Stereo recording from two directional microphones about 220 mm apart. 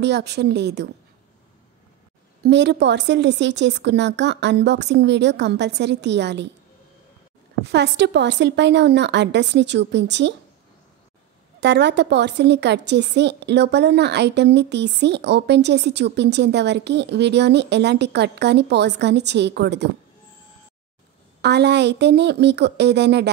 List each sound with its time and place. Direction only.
0.0 s a woman's voice: 50° right (ahead or behind)
2.4 s a woman's voice: 50° right (ahead or behind)
7.6 s a woman's voice: 50° right (ahead or behind)
11.6 s a woman's voice: 50° right (ahead or behind)
21.4 s a woman's voice: 50° right (ahead or behind)